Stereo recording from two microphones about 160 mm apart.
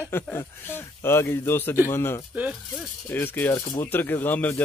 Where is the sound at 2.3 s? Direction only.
10° right (ahead or behind).